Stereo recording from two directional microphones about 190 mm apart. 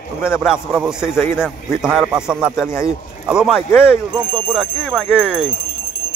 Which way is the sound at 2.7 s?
15° left (ahead or behind).